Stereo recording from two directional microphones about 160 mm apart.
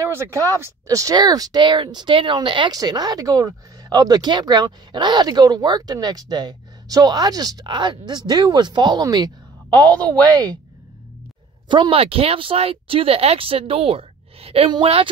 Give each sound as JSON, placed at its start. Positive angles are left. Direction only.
{"t": 0.1, "sound": "speech", "side_deg": -15}
{"t": 9.8, "sound": "a woman's voice", "side_deg": 10}
{"t": 11.7, "sound": "speech", "side_deg": -30}